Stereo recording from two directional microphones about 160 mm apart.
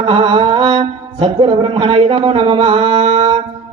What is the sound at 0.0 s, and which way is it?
Mantra, 35° right (ahead or behind).